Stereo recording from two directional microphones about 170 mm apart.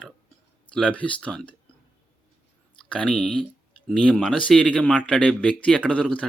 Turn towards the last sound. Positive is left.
turn(degrees=5)  # may be behind; listen again after turning